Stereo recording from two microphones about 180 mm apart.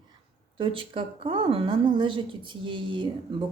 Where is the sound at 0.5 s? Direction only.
30° right (ahead or behind).